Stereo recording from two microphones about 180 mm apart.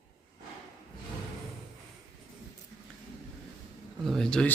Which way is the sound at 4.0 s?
Centre (ahead or behind).